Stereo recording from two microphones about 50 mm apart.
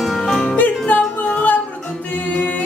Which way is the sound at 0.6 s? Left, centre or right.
Left.